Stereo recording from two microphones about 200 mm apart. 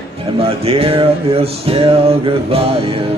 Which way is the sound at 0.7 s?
30° right (ahead or behind).